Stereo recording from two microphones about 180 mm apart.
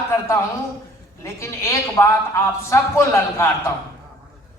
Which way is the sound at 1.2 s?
15° left (ahead or behind).